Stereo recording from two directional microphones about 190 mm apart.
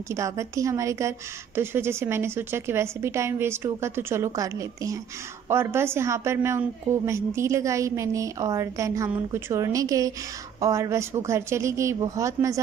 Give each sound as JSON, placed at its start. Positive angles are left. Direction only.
{"t": 0.1, "sound": "a woman's voice", "side_deg": -15}